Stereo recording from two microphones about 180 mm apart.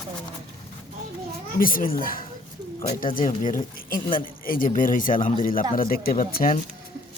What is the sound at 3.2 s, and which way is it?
Speech, 45° left (ahead or behind).